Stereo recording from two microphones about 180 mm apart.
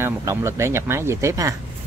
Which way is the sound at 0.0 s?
15° right (ahead or behind).